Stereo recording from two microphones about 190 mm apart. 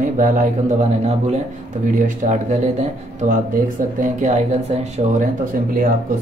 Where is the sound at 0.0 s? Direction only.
40° right (ahead or behind).